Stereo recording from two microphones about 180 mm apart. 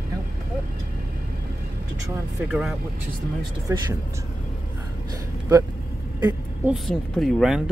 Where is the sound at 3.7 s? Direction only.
15° right (ahead or behind).